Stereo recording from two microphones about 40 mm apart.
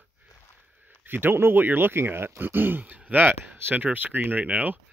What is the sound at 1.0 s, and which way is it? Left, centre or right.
Speech, right.